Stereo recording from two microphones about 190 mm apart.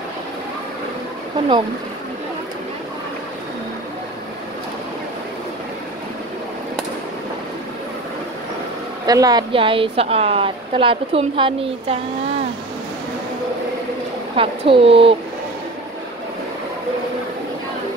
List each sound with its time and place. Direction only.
9.0 s a woman's voice: 20° right (ahead or behind)
14.3 s speech: 30° right (ahead or behind)